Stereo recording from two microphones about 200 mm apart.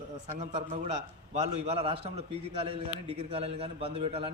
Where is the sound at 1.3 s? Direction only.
35° right (ahead or behind).